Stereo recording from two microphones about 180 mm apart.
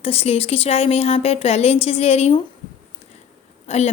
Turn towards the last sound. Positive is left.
turn(degrees=35)  # may be behind; listen again after turning